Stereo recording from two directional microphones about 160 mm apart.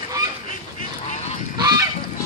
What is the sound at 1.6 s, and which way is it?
Goose, 25° right (ahead or behind).